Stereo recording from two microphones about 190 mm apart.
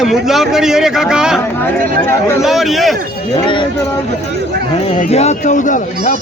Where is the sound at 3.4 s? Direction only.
25° left (ahead or behind).